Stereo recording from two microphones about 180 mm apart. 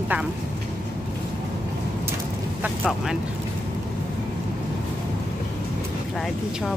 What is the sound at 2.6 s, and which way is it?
Speech, centre (ahead or behind).